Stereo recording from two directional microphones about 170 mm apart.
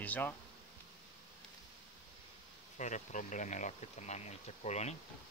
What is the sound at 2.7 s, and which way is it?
Speech, 45° left (ahead or behind).